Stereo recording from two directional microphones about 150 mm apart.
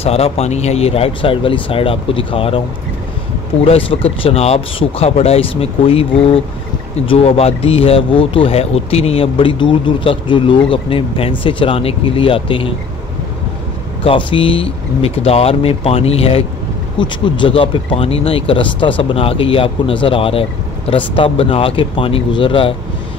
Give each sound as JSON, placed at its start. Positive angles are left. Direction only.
{"t": 0.0, "sound": "speech", "side_deg": 40}
{"t": 3.6, "sound": "speech", "side_deg": 40}
{"t": 14.0, "sound": "speech", "side_deg": 35}